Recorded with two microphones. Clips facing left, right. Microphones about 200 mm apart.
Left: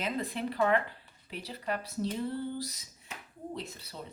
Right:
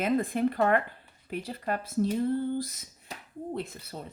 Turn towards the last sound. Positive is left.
turn(degrees=-55)  # may be behind; listen again after turning